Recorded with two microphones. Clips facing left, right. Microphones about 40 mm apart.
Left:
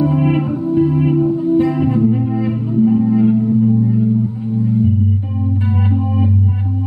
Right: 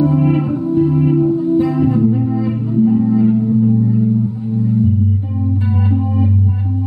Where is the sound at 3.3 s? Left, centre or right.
Centre.